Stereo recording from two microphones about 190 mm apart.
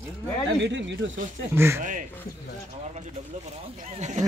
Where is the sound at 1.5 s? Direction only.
15° right (ahead or behind).